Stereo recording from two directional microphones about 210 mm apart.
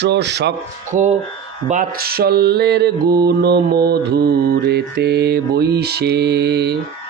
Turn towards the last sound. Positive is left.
turn(degrees=-50)  # may be behind; listen again after turning